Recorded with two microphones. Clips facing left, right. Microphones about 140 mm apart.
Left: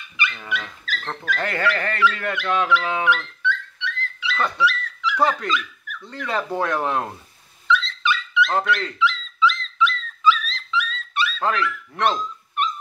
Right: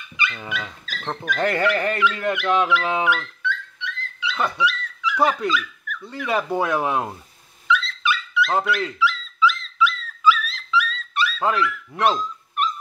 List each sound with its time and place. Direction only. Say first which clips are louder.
0.3 s speech: even; 15° right (ahead or behind)
4.3 s dog: left 1 dB; 15° right (ahead or behind)
6.0 s speech: right 2 dB; 10° right (ahead or behind)
7.6 s dog: left 1 dB; 10° right (ahead or behind)
11.4 s speech: right 2 dB; 10° right (ahead or behind)